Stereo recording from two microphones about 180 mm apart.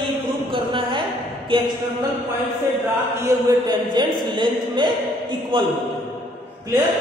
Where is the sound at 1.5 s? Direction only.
30° right (ahead or behind).